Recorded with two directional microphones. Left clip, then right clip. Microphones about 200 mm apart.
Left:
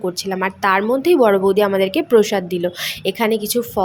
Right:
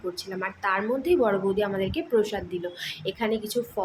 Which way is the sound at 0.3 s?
50° left (ahead or behind).